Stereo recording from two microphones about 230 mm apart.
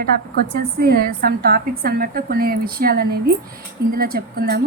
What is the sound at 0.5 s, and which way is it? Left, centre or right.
A woman's voice, right.